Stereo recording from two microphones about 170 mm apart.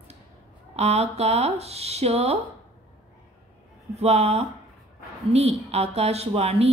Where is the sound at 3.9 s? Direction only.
40° right (ahead or behind).